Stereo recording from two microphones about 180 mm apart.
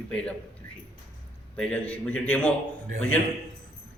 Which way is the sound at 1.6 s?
5° left (ahead or behind).